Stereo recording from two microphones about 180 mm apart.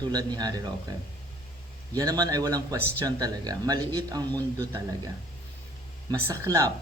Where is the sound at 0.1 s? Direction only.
20° right (ahead or behind).